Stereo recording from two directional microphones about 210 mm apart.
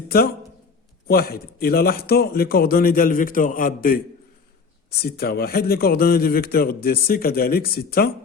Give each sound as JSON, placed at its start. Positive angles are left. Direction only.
{"t": 0.1, "sound": "a man's voice", "side_deg": 45}